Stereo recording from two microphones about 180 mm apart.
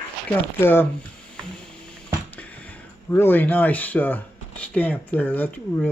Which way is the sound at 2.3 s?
10° left (ahead or behind).